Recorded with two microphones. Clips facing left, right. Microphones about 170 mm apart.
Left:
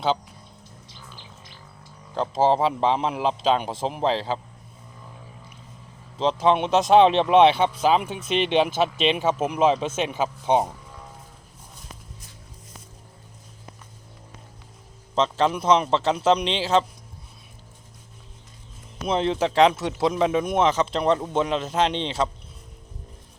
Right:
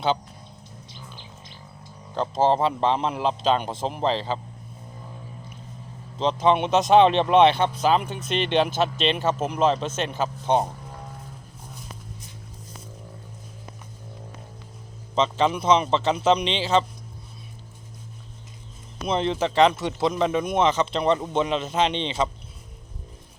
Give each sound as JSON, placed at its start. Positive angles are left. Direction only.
{"t": 2.1, "sound": "speech", "side_deg": 5}
{"t": 6.1, "sound": "speech", "side_deg": 0}
{"t": 15.1, "sound": "speech", "side_deg": 0}
{"t": 19.0, "sound": "speech", "side_deg": 0}